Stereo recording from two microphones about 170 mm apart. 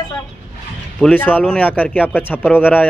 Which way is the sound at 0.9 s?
5° left (ahead or behind).